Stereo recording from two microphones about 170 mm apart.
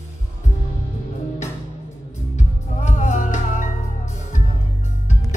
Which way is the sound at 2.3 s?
45° left (ahead or behind).